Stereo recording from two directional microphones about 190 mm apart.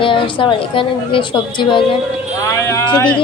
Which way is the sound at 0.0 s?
25° left (ahead or behind).